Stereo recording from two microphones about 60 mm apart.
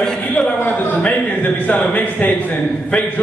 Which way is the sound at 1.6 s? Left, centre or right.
Left.